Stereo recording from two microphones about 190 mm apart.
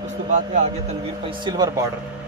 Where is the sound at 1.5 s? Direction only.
20° right (ahead or behind).